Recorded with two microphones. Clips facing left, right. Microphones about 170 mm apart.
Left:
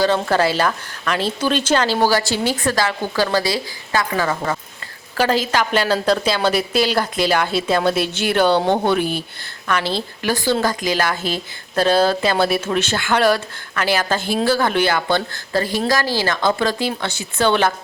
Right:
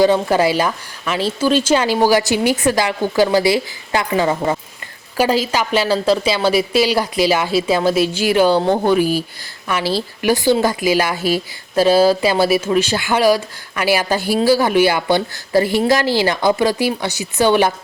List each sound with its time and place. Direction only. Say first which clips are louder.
0.0 s speech: right 3 dB; 15° right (ahead or behind)
5.1 s a woman's voice: right 2 dB; 10° right (ahead or behind)